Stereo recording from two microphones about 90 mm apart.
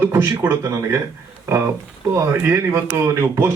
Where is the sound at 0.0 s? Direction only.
30° right (ahead or behind).